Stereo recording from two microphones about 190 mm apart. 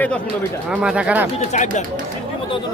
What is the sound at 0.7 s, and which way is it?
Speech, 5° right (ahead or behind).